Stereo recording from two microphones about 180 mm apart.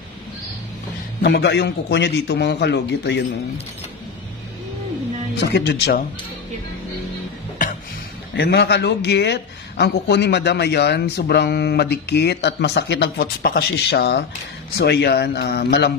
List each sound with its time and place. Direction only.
1.2 s speech: 65° left (ahead or behind)
5.7 s speech: 75° left (ahead or behind)
8.4 s speech: 70° left (ahead or behind)